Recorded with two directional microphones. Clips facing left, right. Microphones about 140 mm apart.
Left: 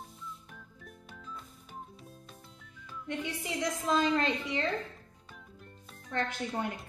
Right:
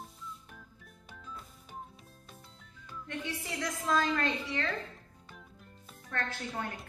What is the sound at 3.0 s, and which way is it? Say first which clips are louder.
Speech: left 3 dB; 20° left (ahead or behind).